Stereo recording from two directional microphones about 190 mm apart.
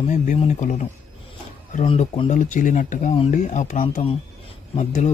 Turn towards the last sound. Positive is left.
turn(degrees=40)  # may be behind; listen again after turning